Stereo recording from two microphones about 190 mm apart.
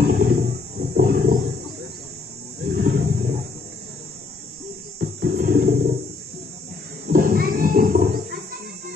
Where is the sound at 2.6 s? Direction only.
50° right (ahead or behind).